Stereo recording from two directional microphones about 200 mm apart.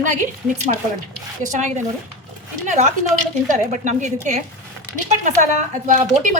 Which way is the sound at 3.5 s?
35° right (ahead or behind).